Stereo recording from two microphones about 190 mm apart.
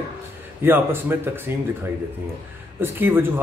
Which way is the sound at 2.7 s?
10° right (ahead or behind).